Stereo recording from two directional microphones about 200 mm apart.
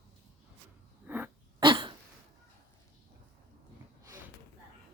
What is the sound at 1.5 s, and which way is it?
Cough, 25° right (ahead or behind).